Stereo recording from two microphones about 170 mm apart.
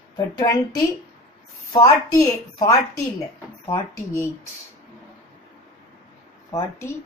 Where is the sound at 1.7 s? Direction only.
20° left (ahead or behind).